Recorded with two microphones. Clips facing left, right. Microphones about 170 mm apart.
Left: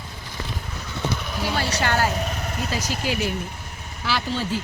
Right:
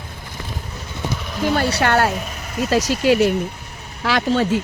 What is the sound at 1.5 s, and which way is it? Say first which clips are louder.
Speech: right 6 dB; 60° right (ahead or behind).